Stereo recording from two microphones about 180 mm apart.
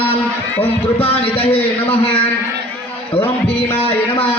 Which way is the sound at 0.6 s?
30° left (ahead or behind).